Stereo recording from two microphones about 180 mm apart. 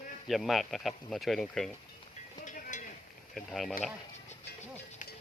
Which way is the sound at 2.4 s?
45° left (ahead or behind).